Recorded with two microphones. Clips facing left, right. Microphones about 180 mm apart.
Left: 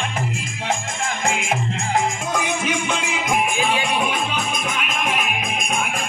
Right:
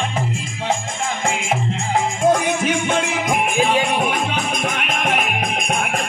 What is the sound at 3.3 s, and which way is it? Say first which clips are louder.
Music: even; 45° right (ahead or behind).